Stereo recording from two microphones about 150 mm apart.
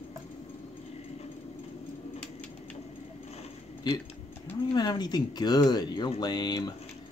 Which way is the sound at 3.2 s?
45° left (ahead or behind).